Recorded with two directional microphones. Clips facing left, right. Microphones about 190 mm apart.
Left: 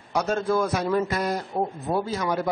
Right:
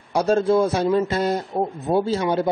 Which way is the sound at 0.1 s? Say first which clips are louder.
Right 6 dB; 30° right (ahead or behind).